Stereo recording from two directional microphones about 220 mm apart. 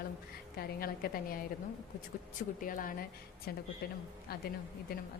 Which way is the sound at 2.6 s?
40° left (ahead or behind).